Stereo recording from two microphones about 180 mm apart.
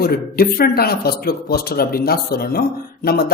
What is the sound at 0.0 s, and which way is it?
Speech, 55° left (ahead or behind).